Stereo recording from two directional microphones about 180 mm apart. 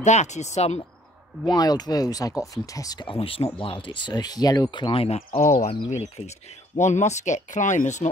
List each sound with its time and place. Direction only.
0.0 s speech: 40° left (ahead or behind)
1.4 s speech: 20° left (ahead or behind)
5.5 s speech: 45° left (ahead or behind)